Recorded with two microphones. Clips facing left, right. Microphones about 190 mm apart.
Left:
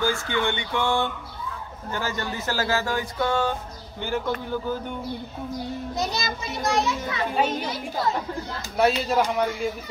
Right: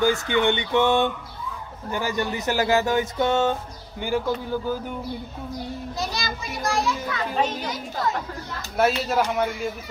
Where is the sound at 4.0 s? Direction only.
10° right (ahead or behind).